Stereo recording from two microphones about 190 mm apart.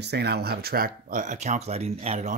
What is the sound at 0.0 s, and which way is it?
Speech, 60° right (ahead or behind).